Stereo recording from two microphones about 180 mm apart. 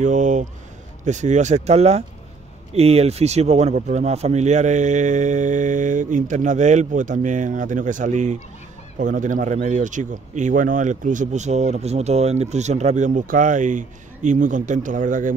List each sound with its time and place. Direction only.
0.0 s speech: 45° right (ahead or behind)